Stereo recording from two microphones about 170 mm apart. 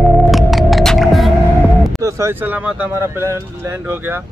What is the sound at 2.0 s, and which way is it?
Speech, 15° right (ahead or behind).